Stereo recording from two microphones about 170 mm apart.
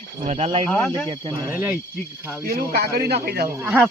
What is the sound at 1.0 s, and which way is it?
Speech, 25° right (ahead or behind).